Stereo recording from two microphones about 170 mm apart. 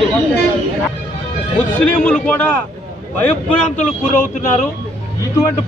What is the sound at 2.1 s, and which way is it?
Speech, 10° left (ahead or behind).